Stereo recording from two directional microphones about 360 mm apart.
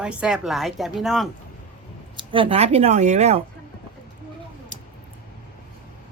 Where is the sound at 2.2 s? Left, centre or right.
Centre.